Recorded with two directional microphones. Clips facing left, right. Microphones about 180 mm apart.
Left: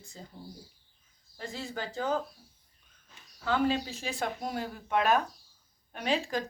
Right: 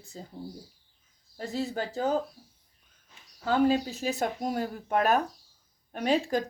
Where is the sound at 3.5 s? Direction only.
40° right (ahead or behind).